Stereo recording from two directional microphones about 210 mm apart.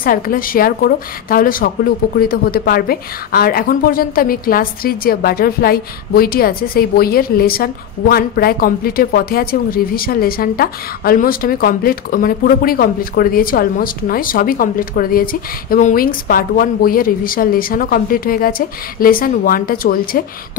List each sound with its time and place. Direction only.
0.0 s a woman's voice: 40° left (ahead or behind)